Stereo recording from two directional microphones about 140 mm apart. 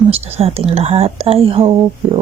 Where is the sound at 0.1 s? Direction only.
45° right (ahead or behind).